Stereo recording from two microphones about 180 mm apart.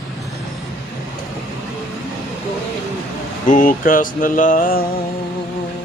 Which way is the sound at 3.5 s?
50° left (ahead or behind).